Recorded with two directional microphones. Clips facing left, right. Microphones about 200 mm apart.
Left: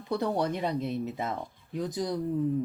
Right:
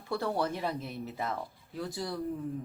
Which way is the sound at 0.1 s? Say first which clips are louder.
Left 3 dB; 20° left (ahead or behind).